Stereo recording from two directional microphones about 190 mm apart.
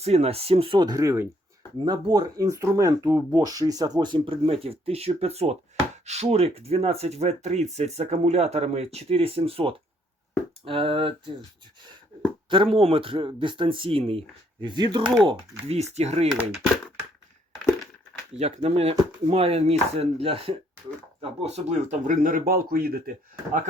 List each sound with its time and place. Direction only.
0.0 s speech: 35° right (ahead or behind)
12.5 s speech: 30° right (ahead or behind)
18.3 s speech: 35° right (ahead or behind); by 23.0 s 50° right (ahead or behind)